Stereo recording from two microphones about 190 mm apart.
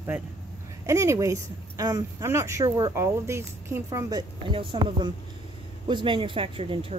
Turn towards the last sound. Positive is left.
turn(degrees=-30)  # may be behind; listen again after turning